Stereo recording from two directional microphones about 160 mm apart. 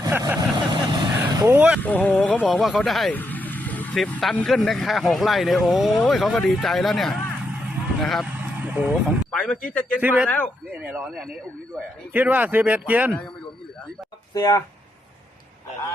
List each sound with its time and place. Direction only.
0.3 s vehicle: 30° right (ahead or behind)
1.5 s speech: 5° right (ahead or behind)
1.8 s speech: 10° left (ahead or behind); by 9.1 s 10° right (ahead or behind)
9.3 s speech: 5° left (ahead or behind)
10.0 s speech: 10° right (ahead or behind)
14.3 s speech: 20° left (ahead or behind)